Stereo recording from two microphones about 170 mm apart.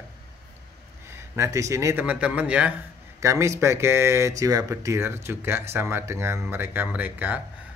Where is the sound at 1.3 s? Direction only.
15° right (ahead or behind).